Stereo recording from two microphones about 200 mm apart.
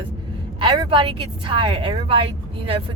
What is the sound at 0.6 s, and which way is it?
A woman's voice, 25° right (ahead or behind).